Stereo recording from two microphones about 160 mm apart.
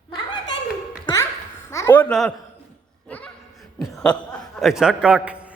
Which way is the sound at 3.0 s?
10° left (ahead or behind).